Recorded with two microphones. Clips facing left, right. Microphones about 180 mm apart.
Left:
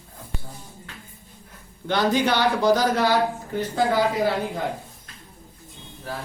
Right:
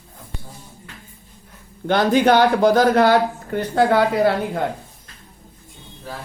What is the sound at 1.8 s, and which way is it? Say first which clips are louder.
A man's voice: right 6 dB; 55° right (ahead or behind).